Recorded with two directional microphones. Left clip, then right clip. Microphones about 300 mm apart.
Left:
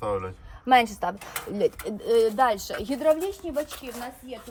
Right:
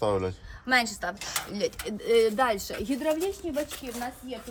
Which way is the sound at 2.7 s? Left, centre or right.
Centre.